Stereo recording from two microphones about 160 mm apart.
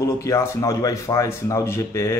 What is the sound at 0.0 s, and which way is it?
Speech, 20° left (ahead or behind).